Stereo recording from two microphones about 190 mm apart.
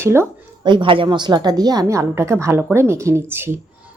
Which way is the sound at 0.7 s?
25° right (ahead or behind).